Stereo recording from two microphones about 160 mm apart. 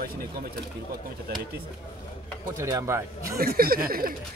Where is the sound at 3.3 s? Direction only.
70° right (ahead or behind).